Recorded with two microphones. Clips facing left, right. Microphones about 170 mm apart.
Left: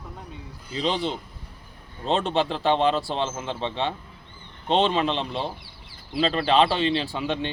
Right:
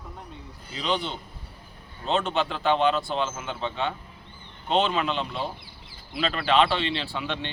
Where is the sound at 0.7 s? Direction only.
35° left (ahead or behind).